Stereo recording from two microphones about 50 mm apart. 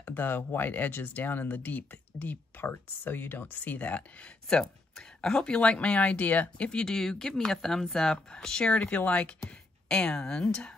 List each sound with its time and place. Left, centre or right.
0.0 s speech: left
6.7 s speech: centre
8.7 s speech: left; by 10.7 s centre